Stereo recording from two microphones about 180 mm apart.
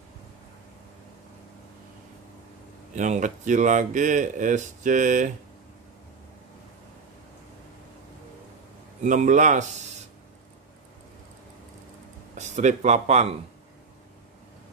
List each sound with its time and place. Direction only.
3.0 s speech: 45° right (ahead or behind)
9.0 s speech: 45° right (ahead or behind)
12.4 s speech: 40° right (ahead or behind)